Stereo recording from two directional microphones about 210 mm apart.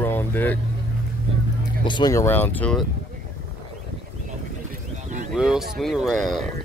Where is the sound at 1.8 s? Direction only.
20° left (ahead or behind).